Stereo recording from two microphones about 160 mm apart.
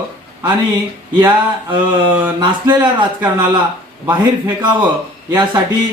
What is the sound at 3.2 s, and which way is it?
Speech, 10° right (ahead or behind).